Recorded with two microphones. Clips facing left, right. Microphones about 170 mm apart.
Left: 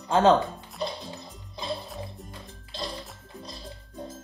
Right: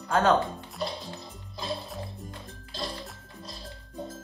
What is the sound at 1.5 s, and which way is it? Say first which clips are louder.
Music: left 1 dB; centre (ahead or behind).